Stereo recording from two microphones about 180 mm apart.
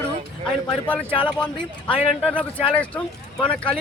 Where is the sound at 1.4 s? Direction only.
5° left (ahead or behind).